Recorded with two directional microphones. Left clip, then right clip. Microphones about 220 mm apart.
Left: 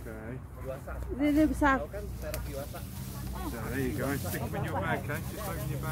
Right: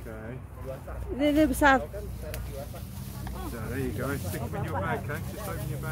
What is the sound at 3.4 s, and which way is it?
Speech, centre (ahead or behind).